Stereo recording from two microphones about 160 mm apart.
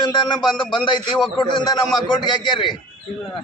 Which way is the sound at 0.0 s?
30° left (ahead or behind).